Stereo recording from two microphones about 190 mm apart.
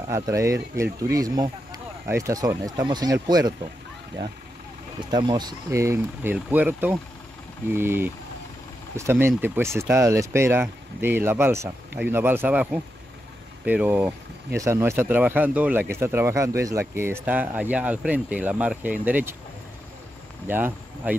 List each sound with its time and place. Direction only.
0.1 s speech: 15° right (ahead or behind)
5.1 s speech: 20° right (ahead or behind)
20.4 s speech: 10° right (ahead or behind)